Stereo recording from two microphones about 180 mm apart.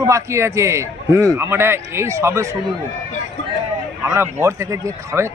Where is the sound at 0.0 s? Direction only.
15° right (ahead or behind).